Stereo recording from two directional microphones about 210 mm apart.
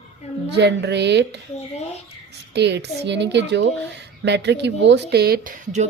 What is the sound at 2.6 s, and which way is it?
A woman's voice, 55° right (ahead or behind).